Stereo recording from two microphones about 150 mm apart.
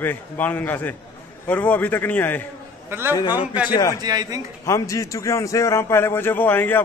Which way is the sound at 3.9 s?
25° right (ahead or behind).